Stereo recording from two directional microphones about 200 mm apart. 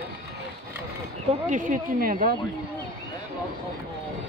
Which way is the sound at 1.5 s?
40° right (ahead or behind).